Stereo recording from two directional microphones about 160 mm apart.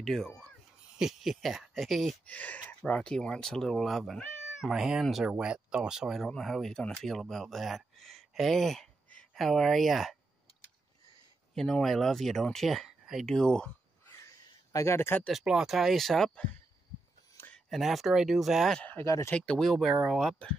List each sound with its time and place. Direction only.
0.0 s speech: centre (ahead or behind)
11.5 s speech: centre (ahead or behind)
14.1 s a sound: 20° left (ahead or behind)
15.2 s speech: 5° right (ahead or behind)
17.6 s speech: centre (ahead or behind); by 19.3 s 15° left (ahead or behind)
19.3 s speech: 5° left (ahead or behind)